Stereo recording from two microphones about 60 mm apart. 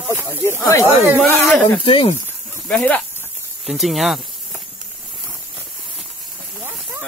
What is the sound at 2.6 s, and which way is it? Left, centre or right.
Speech, left.